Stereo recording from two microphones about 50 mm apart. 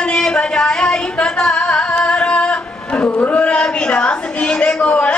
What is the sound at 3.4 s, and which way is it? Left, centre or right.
A man's voice, centre.